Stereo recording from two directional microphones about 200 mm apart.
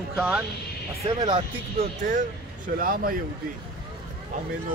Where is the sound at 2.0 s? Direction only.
40° right (ahead or behind).